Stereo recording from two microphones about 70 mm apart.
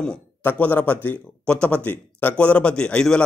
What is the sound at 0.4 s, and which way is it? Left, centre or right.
A man's voice, left.